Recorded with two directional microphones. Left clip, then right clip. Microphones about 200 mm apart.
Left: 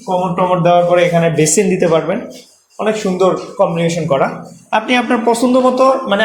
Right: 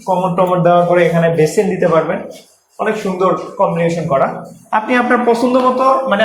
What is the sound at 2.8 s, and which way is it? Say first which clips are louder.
A man's voice: left 1 dB; 35° left (ahead or behind).